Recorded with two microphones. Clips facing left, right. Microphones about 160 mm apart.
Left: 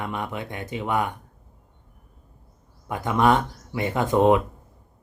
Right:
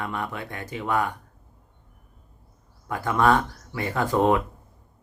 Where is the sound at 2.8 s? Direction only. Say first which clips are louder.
Left 1 dB; 20° left (ahead or behind).